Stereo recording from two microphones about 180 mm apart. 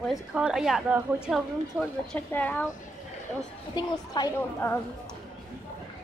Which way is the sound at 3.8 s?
20° left (ahead or behind).